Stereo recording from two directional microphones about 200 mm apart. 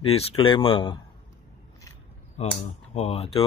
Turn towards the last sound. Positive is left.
turn(degrees=30)  # may be behind; listen again after turning